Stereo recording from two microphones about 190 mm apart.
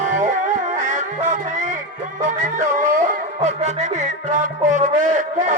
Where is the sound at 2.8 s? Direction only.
40° right (ahead or behind).